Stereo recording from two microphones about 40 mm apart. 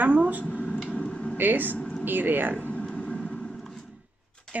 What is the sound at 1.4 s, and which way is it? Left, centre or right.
Speech, right.